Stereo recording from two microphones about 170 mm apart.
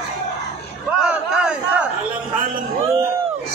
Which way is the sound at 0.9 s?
5° right (ahead or behind).